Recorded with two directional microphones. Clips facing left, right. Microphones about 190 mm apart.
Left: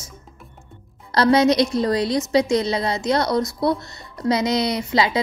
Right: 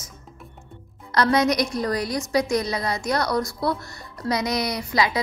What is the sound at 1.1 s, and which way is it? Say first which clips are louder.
A woman's voice: left 4 dB; 25° left (ahead or behind).